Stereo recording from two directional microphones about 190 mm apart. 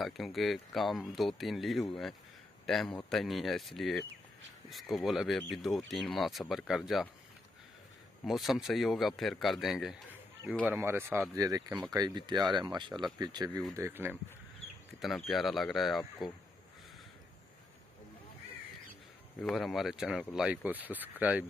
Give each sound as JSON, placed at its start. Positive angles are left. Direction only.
{"t": 0.0, "sound": "a man's voice", "side_deg": 0}
{"t": 8.3, "sound": "speech", "side_deg": 0}
{"t": 10.7, "sound": "speech", "side_deg": -10}
{"t": 15.0, "sound": "speech", "side_deg": 0}
{"t": 19.4, "sound": "speech", "side_deg": 0}